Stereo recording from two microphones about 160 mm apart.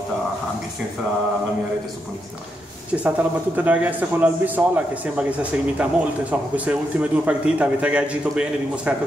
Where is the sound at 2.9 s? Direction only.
10° right (ahead or behind).